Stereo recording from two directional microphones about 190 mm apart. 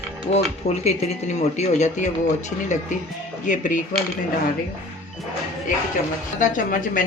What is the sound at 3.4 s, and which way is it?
Speech, 40° left (ahead or behind).